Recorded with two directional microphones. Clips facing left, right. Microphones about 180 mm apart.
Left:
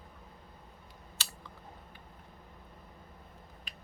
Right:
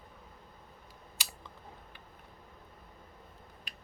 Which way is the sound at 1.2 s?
15° right (ahead or behind).